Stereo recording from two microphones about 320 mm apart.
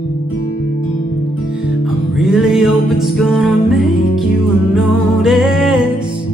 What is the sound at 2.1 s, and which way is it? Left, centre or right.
Music, centre.